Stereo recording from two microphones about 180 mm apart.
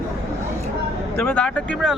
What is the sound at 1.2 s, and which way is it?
Speech, 10° left (ahead or behind).